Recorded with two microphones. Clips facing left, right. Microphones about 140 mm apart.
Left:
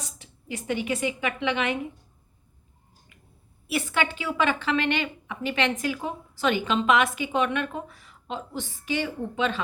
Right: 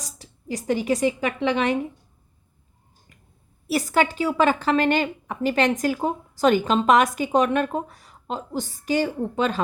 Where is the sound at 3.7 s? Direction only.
40° right (ahead or behind).